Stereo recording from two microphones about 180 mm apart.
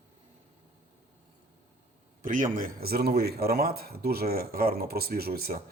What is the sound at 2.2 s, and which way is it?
Speech, 50° right (ahead or behind).